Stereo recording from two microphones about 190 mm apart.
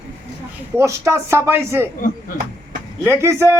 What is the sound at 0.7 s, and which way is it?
A man's voice, 15° right (ahead or behind).